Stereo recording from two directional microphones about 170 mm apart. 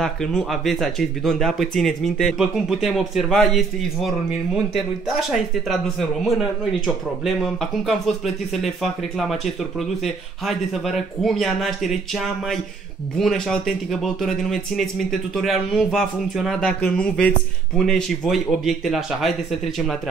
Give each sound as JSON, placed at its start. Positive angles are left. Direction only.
{"t": 0.0, "sound": "speech", "side_deg": 0}
{"t": 5.3, "sound": "speech", "side_deg": 0}